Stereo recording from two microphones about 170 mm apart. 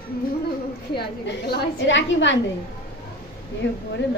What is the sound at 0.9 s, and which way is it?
A woman's voice, 70° left (ahead or behind).